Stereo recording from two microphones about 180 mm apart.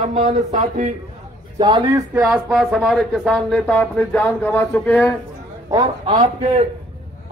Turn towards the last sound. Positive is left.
turn(degrees=-35)  # may be behind; listen again after turning